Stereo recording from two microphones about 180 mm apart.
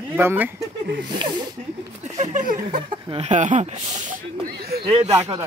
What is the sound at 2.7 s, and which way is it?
Speech, 30° right (ahead or behind).